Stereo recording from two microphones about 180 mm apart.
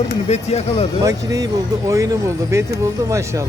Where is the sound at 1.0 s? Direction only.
20° right (ahead or behind).